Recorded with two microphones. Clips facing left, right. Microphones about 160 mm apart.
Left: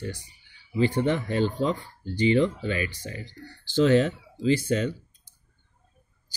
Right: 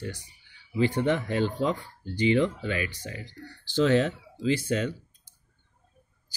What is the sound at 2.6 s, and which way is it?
Speech, 35° left (ahead or behind).